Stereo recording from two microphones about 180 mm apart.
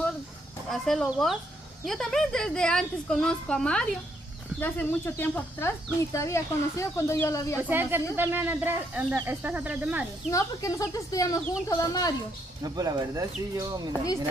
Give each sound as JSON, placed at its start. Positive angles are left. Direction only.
{"t": 0.7, "sound": "a woman's voice", "side_deg": 0}
{"t": 7.5, "sound": "speech", "side_deg": -10}
{"t": 10.3, "sound": "speech", "side_deg": 20}
{"t": 12.6, "sound": "speech", "side_deg": -20}